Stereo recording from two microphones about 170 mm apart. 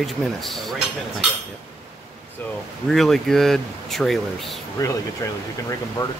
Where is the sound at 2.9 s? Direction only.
Centre (ahead or behind).